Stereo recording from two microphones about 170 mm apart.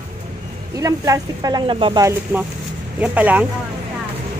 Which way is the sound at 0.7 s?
20° right (ahead or behind).